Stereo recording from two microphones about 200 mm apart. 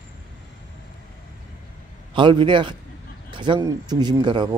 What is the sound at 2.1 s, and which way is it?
Speech, 25° right (ahead or behind).